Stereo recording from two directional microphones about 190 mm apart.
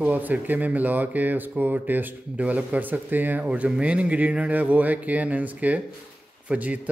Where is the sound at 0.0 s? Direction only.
10° right (ahead or behind).